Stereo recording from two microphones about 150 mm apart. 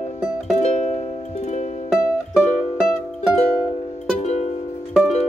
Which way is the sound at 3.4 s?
40° left (ahead or behind).